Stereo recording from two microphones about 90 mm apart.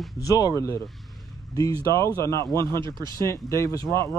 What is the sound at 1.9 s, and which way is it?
Speech, 35° left (ahead or behind).